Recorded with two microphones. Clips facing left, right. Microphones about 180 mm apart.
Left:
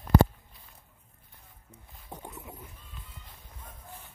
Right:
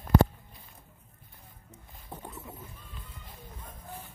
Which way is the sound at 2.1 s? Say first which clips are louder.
Even; 15° left (ahead or behind).